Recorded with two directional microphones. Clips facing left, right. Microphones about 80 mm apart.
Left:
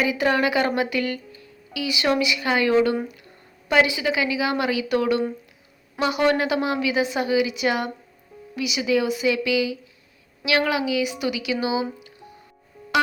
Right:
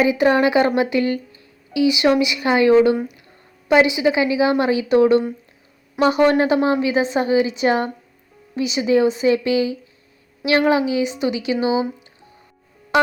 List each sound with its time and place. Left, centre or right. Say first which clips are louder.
0.0 s a woman's voice: right 6 dB; right